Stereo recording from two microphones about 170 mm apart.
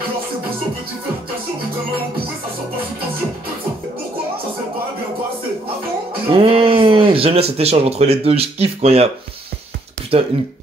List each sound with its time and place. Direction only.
6.3 s speech: 30° right (ahead or behind)
10.1 s speech: 35° right (ahead or behind)